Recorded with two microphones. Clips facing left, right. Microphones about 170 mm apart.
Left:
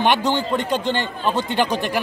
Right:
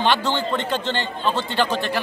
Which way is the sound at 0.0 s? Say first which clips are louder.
Left 2 dB; 15° left (ahead or behind).